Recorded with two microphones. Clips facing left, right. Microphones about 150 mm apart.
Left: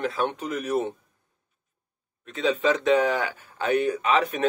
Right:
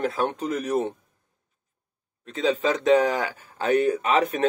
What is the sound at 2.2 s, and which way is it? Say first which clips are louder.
A man's voice: even; 35° right (ahead or behind).